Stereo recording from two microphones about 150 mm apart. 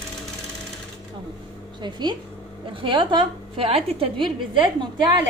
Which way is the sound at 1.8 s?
30° right (ahead or behind).